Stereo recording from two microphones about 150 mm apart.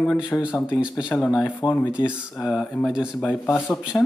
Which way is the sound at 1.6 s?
15° left (ahead or behind).